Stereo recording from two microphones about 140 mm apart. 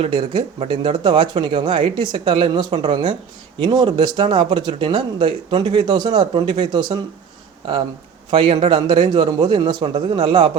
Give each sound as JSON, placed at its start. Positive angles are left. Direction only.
{"t": 0.0, "sound": "speech", "side_deg": -40}
{"t": 8.3, "sound": "speech", "side_deg": -40}